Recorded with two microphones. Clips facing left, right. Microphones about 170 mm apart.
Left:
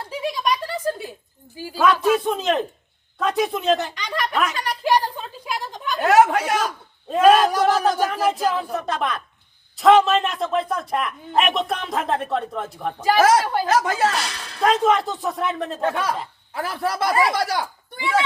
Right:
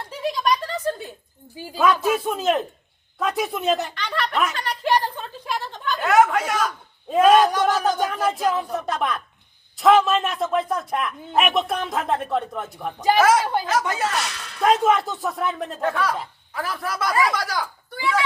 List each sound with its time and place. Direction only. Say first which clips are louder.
0.3 s a sound: right 2 dB; 10° left (ahead or behind)
2.0 s a man's voice: left 3 dB; 5° right (ahead or behind)
3.9 s speech: left 1 dB; 10° left (ahead or behind)
4.5 s a sound: left 1 dB; 10° left (ahead or behind)
6.0 s speech: left 2 dB; 35° left (ahead or behind)
7.1 s a man's voice: even; centre (ahead or behind)
13.1 s speech: left 2 dB; 40° left (ahead or behind)
14.6 s a man's voice: even; centre (ahead or behind)
15.8 s speech: right 1 dB; 25° left (ahead or behind)